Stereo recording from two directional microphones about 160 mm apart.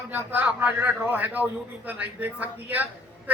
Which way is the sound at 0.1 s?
10° right (ahead or behind).